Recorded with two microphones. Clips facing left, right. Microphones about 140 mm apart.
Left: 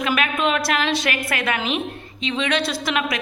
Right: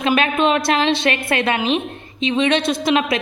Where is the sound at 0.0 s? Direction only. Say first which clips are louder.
Right 4 dB; 25° right (ahead or behind).